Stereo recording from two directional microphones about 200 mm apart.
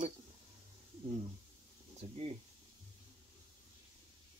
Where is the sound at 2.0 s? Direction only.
30° right (ahead or behind).